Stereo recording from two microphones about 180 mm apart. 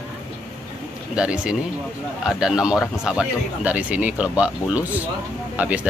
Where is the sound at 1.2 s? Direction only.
5° right (ahead or behind).